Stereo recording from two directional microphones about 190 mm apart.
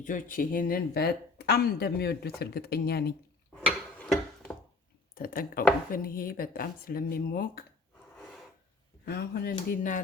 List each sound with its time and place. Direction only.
0.0 s speech: 45° left (ahead or behind)
3.7 s a sound: centre (ahead or behind)
5.1 s speech: 50° left (ahead or behind)
9.0 s speech: 55° left (ahead or behind)